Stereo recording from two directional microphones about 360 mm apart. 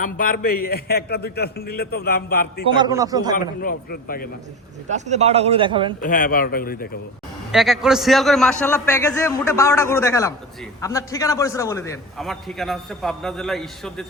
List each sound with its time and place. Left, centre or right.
0.0 s a man's voice: left
2.7 s speech: centre
3.3 s a man's voice: left
4.9 s speech: centre
6.0 s a man's voice: left
7.5 s a man's voice: centre